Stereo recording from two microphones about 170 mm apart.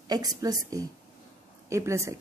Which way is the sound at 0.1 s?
20° right (ahead or behind).